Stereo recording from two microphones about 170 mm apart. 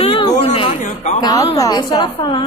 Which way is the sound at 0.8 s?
50° left (ahead or behind).